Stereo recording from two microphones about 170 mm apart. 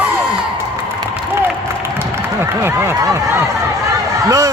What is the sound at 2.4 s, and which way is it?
A man's voice, 15° right (ahead or behind).